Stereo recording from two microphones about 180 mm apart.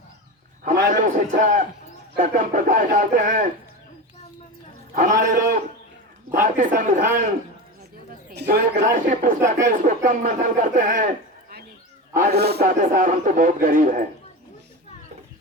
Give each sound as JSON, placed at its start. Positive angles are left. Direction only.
{"t": 0.6, "sound": "a man's voice", "side_deg": -45}
{"t": 4.9, "sound": "a man's voice", "side_deg": -45}
{"t": 8.4, "sound": "a man's voice", "side_deg": -70}
{"t": 9.0, "sound": "a man's voice", "side_deg": -45}
{"t": 12.1, "sound": "a man's voice", "side_deg": -65}